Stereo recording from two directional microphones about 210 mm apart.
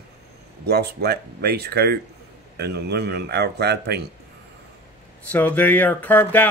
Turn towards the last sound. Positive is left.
turn(degrees=10)  # may be behind; listen again after turning